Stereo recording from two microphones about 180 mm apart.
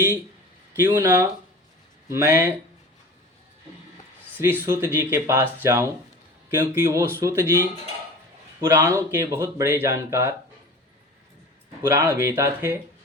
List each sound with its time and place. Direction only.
0.9 s speech: 15° right (ahead or behind)
4.6 s speech: 15° right (ahead or behind)
8.6 s speech: 15° right (ahead or behind)
11.8 s speech: 20° right (ahead or behind)